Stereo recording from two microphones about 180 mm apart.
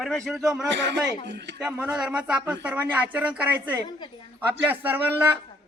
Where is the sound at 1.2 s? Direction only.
75° right (ahead or behind).